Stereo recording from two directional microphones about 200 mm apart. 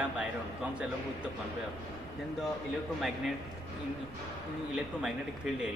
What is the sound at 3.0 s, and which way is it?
Speech, centre (ahead or behind).